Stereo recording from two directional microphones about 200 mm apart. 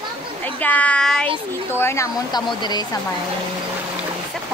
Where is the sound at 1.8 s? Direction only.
15° left (ahead or behind).